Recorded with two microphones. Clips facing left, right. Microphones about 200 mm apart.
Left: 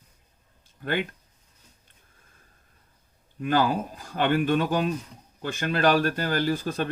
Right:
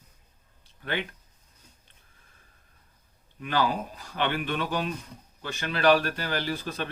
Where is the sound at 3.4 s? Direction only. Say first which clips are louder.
Left 4 dB; 45° left (ahead or behind).